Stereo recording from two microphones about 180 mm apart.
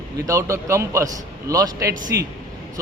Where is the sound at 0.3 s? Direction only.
15° right (ahead or behind).